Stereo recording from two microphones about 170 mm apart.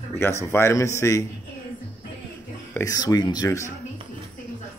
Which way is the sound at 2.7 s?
20° left (ahead or behind).